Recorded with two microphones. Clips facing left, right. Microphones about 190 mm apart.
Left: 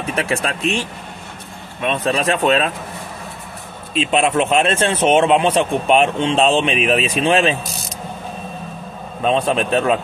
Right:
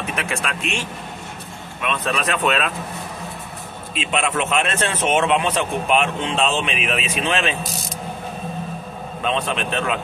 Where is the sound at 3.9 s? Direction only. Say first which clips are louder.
Left 6 dB; 35° left (ahead or behind).